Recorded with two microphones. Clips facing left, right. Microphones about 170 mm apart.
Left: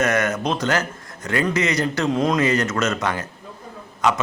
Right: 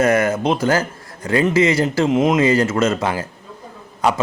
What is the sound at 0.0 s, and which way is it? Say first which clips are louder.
A man's voice: right 5 dB; 30° right (ahead or behind).